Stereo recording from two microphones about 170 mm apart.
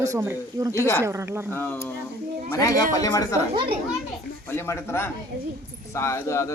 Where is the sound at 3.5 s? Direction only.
30° right (ahead or behind).